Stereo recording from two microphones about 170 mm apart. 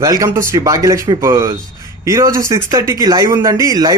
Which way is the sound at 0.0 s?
20° right (ahead or behind).